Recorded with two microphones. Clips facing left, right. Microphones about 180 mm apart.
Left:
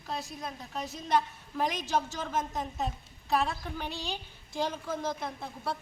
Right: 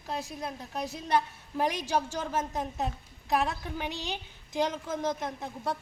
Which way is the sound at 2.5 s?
10° right (ahead or behind).